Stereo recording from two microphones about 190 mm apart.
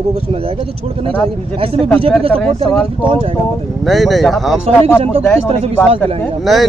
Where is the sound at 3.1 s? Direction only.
25° right (ahead or behind).